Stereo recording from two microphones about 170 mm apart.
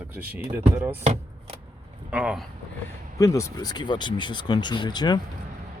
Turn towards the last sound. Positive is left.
turn(degrees=25)  # may be behind; listen again after turning